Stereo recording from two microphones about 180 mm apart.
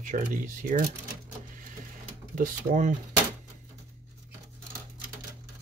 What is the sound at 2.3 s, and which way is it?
Speech, 45° right (ahead or behind).